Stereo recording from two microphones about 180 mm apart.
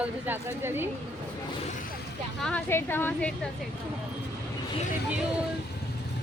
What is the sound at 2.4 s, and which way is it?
A woman's voice, 10° left (ahead or behind).